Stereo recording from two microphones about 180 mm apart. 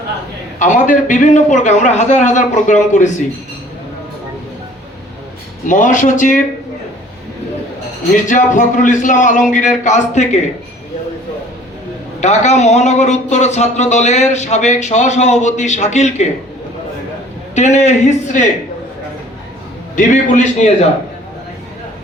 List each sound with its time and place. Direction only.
0.6 s a man's voice: 45° left (ahead or behind)
5.6 s a man's voice: 45° left (ahead or behind)
8.1 s a man's voice: 45° left (ahead or behind)
12.2 s speech: 40° left (ahead or behind)
17.5 s speech: 40° left (ahead or behind)
20.0 s speech: 40° left (ahead or behind)